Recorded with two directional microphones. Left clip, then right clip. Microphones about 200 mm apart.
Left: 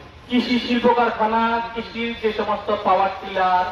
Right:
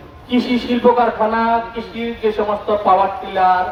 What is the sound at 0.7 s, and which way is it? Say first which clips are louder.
Speech: right 3 dB; 45° right (ahead or behind).